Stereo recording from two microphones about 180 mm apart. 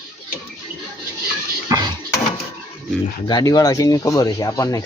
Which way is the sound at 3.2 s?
20° left (ahead or behind).